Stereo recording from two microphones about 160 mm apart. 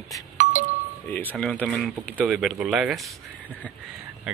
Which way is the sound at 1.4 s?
5° left (ahead or behind).